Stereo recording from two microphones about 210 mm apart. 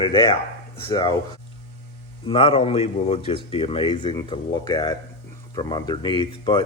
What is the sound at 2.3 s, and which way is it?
Speech, 25° left (ahead or behind).